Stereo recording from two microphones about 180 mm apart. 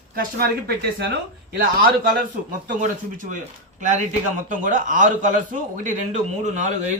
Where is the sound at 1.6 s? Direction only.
50° right (ahead or behind).